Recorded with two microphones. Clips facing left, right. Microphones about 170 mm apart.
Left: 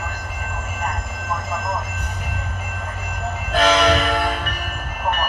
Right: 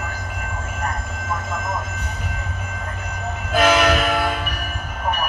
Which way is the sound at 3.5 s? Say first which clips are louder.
Even; 5° right (ahead or behind).